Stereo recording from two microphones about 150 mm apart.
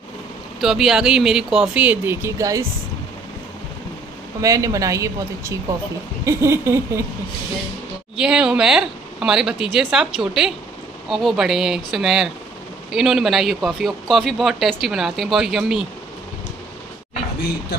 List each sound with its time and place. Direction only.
0.6 s speech: centre (ahead or behind); by 2.6 s 20° right (ahead or behind)
4.4 s speech: 20° right (ahead or behind)
6.2 s a sound: 20° right (ahead or behind)
8.2 s speech: 5° right (ahead or behind)